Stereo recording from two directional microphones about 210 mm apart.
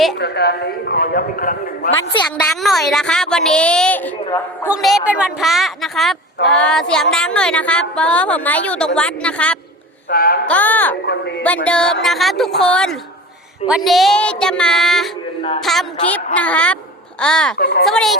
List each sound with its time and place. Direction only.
0.2 s a man's voice: 50° left (ahead or behind)
2.4 s a woman's voice: centre (ahead or behind)
10.1 s a man's voice: 45° left (ahead or behind)
10.4 s a woman's voice: 5° left (ahead or behind)
11.0 s a man's voice: 55° left (ahead or behind)
11.4 s a woman's voice: 5° left (ahead or behind)
17.6 s a man's voice: 50° left (ahead or behind)
17.8 s a woman's voice: centre (ahead or behind)